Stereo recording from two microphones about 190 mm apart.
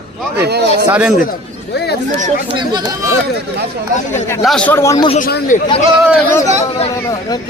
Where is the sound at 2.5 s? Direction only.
25° right (ahead or behind).